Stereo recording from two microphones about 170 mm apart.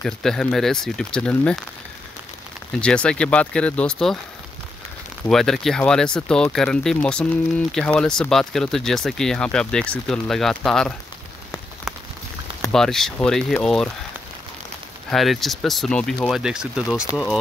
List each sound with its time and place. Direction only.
0.0 s speech: 5° left (ahead or behind)
2.8 s speech: 5° left (ahead or behind)
5.3 s speech: centre (ahead or behind)
12.7 s speech: 5° left (ahead or behind)
15.0 s speech: centre (ahead or behind)